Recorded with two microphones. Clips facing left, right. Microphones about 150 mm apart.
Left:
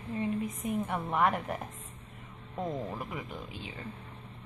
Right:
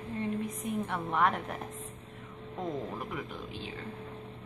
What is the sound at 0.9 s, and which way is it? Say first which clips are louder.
Speech: even; 5° left (ahead or behind).